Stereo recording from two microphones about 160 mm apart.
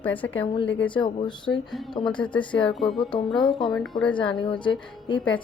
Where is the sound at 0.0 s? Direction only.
10° left (ahead or behind).